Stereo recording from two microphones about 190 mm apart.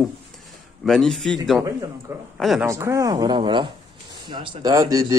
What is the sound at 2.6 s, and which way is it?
Speech, 15° right (ahead or behind).